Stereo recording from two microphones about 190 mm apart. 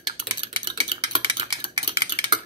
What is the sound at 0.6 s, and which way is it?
Typing, 30° right (ahead or behind).